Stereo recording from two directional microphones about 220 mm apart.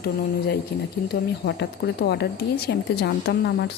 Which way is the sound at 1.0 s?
50° left (ahead or behind).